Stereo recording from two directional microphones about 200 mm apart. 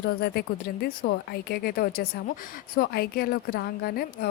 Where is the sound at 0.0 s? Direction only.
50° left (ahead or behind).